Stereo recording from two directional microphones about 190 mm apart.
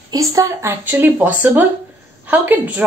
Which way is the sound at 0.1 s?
15° right (ahead or behind).